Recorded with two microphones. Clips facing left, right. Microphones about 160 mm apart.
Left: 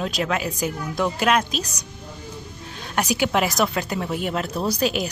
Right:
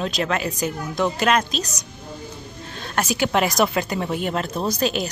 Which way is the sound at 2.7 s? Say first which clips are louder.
Even; 10° left (ahead or behind).